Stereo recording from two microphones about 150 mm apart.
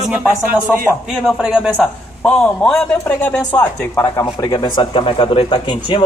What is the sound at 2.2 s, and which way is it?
Speech, 5° left (ahead or behind).